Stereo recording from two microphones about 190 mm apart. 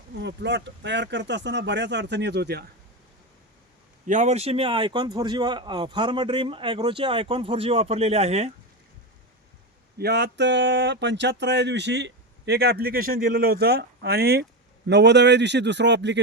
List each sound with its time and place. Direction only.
0.2 s speech: 65° right (ahead or behind)
4.0 s speech: 40° right (ahead or behind)
10.0 s speech: 60° right (ahead or behind)